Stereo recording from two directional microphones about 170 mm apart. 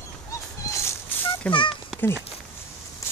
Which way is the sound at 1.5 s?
30° left (ahead or behind).